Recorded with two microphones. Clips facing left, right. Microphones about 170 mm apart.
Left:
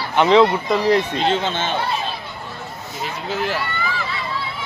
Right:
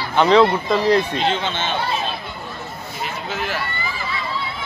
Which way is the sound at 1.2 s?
40° left (ahead or behind).